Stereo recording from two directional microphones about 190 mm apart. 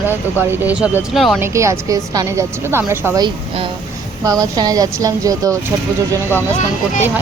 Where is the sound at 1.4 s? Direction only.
15° right (ahead or behind).